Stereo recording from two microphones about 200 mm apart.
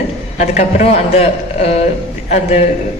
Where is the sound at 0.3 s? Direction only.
35° left (ahead or behind).